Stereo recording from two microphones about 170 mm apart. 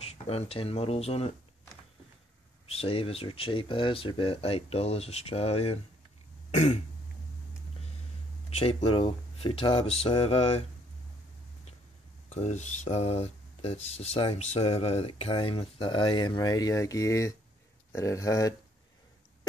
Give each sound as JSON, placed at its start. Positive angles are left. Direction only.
{"t": 0.0, "sound": "speech", "side_deg": 35}
{"t": 2.6, "sound": "speech", "side_deg": 35}
{"t": 8.5, "sound": "speech", "side_deg": 35}
{"t": 12.3, "sound": "speech", "side_deg": 40}